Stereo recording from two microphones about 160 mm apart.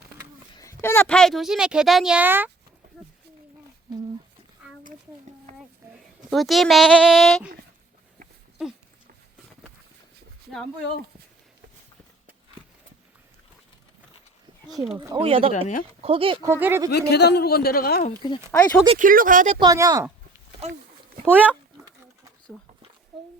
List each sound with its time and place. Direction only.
0.5 s a woman's voice: 20° left (ahead or behind); by 2.5 s 10° right (ahead or behind)
4.6 s a sound: 5° right (ahead or behind)
5.5 s speech: 50° right (ahead or behind)
5.9 s a woman's voice: centre (ahead or behind)
14.9 s speech: 30° right (ahead or behind)
15.5 s speech: 50° left (ahead or behind)
16.0 s speech: 35° right (ahead or behind)
16.5 s speech: 15° right (ahead or behind)
16.9 s a man's voice: 90° left; by 18.0 s 70° left (ahead or behind)
18.5 s speech: 15° left (ahead or behind)
18.9 s speech: 60° right (ahead or behind)
19.5 s speech: 25° right (ahead or behind)
21.2 s speech: 10° right (ahead or behind)
23.1 s a sound: centre (ahead or behind)